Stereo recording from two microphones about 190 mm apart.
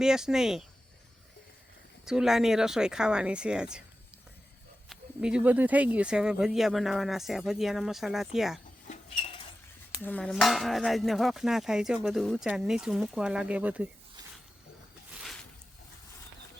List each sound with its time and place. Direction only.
0.0 s speech: 5° right (ahead or behind)
2.0 s speech: 5° right (ahead or behind)
4.9 s speech: 5° right (ahead or behind)
8.9 s a sound: 30° left (ahead or behind)
10.0 s speech: 10° left (ahead or behind)
15.1 s a sound: centre (ahead or behind)